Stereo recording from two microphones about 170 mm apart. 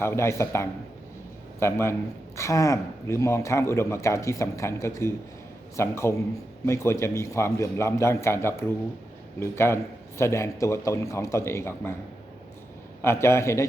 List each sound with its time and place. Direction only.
0.0 s speech: 15° left (ahead or behind)
13.0 s speech: 15° left (ahead or behind)